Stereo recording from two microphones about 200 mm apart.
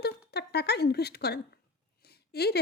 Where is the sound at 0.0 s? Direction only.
55° left (ahead or behind).